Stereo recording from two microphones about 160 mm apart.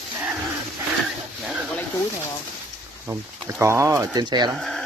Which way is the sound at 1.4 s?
10° right (ahead or behind).